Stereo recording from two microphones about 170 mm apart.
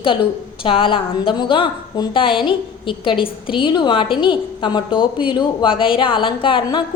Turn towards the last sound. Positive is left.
turn(degrees=30)  # may be behind; listen again after turning